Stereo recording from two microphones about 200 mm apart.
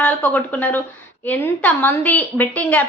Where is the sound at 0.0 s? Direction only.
10° left (ahead or behind).